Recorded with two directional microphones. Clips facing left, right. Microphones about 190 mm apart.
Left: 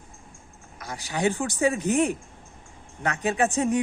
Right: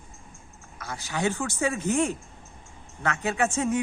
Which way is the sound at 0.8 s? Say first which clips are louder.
Left 2 dB; 15° left (ahead or behind).